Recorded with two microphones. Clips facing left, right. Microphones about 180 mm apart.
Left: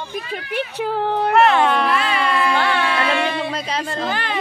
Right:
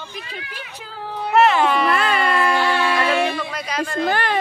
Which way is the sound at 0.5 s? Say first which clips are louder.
Left 13 dB; 65° left (ahead or behind).